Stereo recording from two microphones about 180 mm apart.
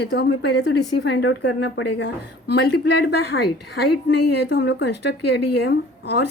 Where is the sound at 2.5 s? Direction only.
65° left (ahead or behind).